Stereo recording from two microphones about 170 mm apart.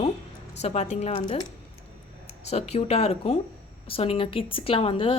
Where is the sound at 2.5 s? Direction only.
40° left (ahead or behind).